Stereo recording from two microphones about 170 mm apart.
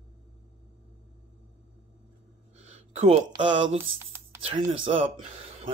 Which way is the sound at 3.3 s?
30° right (ahead or behind).